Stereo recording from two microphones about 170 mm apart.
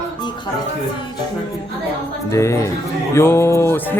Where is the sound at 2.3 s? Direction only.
15° left (ahead or behind).